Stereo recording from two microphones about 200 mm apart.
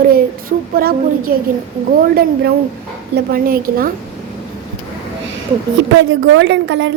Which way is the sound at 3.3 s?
50° right (ahead or behind).